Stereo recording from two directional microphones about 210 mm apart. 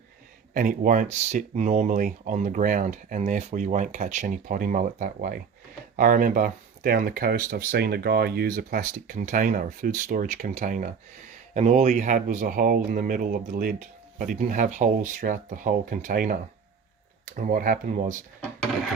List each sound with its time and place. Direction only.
0.5 s speech: 40° right (ahead or behind)